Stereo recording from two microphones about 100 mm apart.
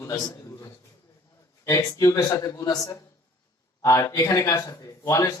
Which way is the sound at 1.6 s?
35° left (ahead or behind).